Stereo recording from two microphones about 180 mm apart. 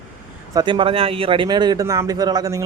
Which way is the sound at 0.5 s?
25° right (ahead or behind).